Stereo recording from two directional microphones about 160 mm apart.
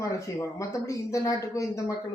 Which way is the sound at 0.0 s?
20° left (ahead or behind).